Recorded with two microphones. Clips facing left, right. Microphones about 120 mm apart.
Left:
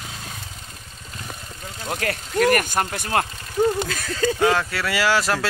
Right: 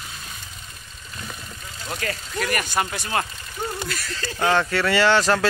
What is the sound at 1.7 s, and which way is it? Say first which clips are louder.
Speech: left 3 dB; 55° left (ahead or behind).